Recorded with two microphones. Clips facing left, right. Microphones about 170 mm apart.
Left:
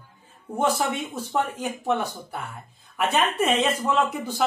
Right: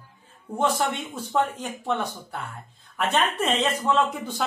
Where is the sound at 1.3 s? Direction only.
10° left (ahead or behind).